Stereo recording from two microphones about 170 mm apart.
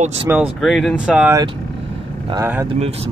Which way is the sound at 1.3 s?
25° right (ahead or behind).